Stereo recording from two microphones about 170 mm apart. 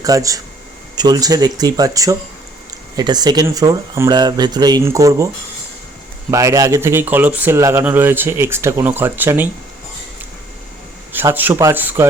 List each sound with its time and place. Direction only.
0.0 s speech: 20° right (ahead or behind)
6.3 s speech: 20° right (ahead or behind)
11.1 s speech: 10° right (ahead or behind)